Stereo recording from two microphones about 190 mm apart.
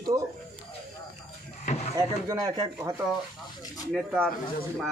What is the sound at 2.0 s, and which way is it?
Speech, 20° right (ahead or behind).